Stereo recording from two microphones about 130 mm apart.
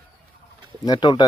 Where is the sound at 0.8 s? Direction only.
30° left (ahead or behind).